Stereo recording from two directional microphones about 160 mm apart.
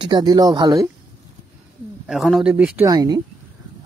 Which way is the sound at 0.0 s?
25° right (ahead or behind).